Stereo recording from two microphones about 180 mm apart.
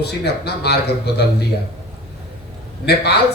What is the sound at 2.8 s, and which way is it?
Speech, 65° left (ahead or behind).